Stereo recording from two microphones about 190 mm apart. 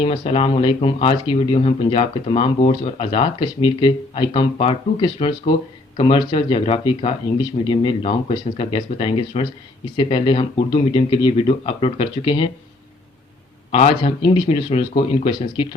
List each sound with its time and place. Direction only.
0.0 s speech: 25° left (ahead or behind)
13.7 s speech: 35° left (ahead or behind)